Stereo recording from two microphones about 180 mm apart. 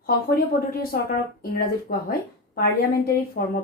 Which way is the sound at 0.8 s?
55° left (ahead or behind).